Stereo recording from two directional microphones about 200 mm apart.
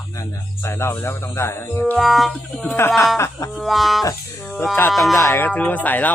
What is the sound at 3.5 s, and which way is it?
Music, centre (ahead or behind).